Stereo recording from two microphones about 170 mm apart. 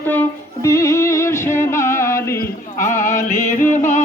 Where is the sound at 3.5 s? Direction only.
50° left (ahead or behind).